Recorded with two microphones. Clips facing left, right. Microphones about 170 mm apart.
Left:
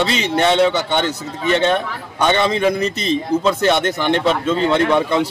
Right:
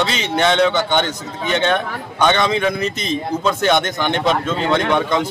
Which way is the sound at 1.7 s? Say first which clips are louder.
Left 1 dB; 5° left (ahead or behind).